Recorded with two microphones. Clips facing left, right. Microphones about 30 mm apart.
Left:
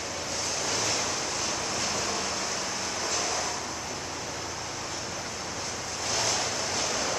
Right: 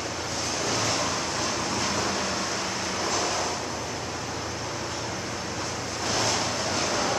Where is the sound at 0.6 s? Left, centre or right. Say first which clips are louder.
Right 3 dB; centre.